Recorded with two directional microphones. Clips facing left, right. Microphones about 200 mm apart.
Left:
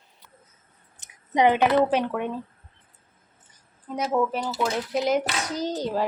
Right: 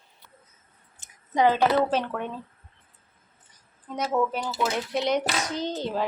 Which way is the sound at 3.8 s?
10° left (ahead or behind).